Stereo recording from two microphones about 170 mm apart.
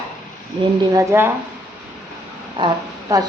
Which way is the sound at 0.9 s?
15° right (ahead or behind).